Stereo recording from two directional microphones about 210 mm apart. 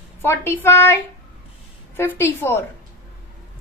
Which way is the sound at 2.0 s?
10° left (ahead or behind).